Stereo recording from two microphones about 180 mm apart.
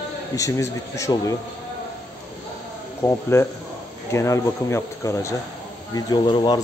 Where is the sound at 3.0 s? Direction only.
15° left (ahead or behind).